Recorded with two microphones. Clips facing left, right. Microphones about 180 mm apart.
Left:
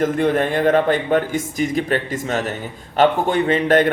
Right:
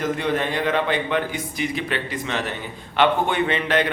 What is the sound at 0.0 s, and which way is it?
A man's voice, 50° left (ahead or behind).